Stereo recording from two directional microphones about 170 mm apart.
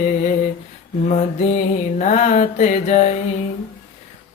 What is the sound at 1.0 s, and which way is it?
Mantra, 40° left (ahead or behind).